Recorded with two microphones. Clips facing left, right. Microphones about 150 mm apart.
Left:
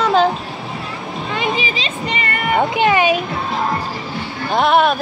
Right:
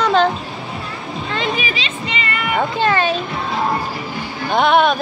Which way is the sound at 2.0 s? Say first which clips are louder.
Left 1 dB; 45° left (ahead or behind).